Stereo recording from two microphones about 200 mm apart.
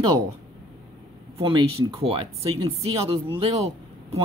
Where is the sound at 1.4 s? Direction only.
25° right (ahead or behind).